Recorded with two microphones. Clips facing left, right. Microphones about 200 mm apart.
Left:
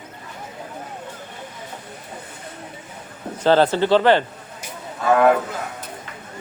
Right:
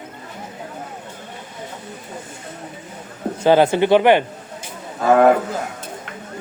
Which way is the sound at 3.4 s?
10° right (ahead or behind).